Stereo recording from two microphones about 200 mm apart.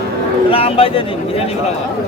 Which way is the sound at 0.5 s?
30° left (ahead or behind).